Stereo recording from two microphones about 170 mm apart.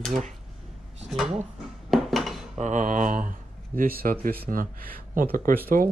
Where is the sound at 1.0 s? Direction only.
Centre (ahead or behind).